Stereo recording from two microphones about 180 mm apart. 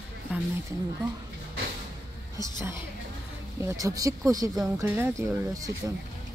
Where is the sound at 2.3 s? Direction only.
15° right (ahead or behind).